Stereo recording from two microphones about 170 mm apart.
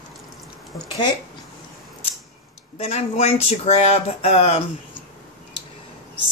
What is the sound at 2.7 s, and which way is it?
Speech, 40° left (ahead or behind).